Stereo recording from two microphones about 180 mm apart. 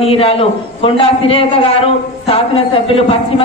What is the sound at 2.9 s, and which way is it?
Speech, 30° left (ahead or behind).